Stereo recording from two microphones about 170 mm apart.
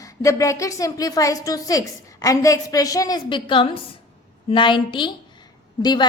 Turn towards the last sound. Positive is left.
turn(degrees=25)  # may be behind; listen again after turning